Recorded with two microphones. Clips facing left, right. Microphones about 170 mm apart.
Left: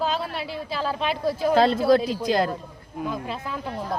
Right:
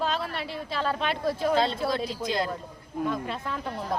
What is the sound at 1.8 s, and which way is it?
Speech, 60° left (ahead or behind).